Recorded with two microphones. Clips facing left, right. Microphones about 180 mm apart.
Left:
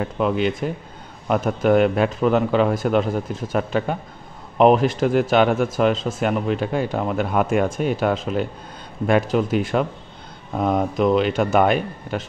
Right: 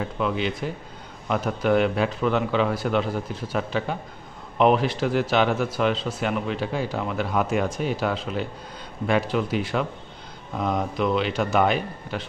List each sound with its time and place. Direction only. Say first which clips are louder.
0.2 s speech: left 5 dB; 50° left (ahead or behind)